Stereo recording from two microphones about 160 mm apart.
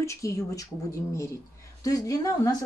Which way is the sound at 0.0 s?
20° left (ahead or behind).